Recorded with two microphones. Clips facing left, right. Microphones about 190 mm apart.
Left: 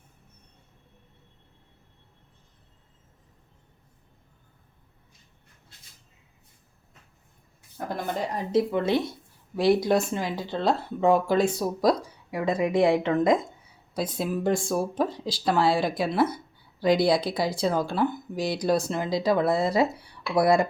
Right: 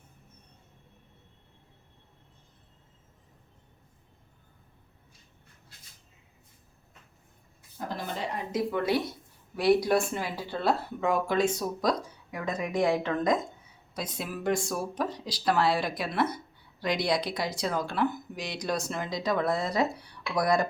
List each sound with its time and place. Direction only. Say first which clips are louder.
7.8 s a sound: left 3 dB; 60° left (ahead or behind)
8.5 s speech: left 5 dB; 25° left (ahead or behind)
11.0 s speech: left 5 dB; 30° left (ahead or behind)